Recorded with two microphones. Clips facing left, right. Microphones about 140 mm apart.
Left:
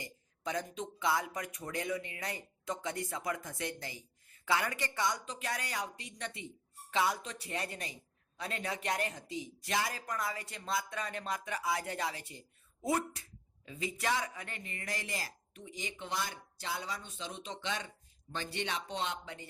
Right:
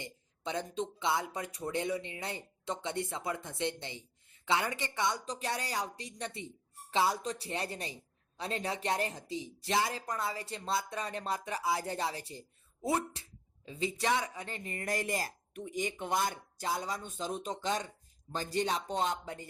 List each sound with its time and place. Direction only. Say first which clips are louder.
0.0 s speech: even; 25° right (ahead or behind)
5.2 s speech: right 3 dB; 35° right (ahead or behind)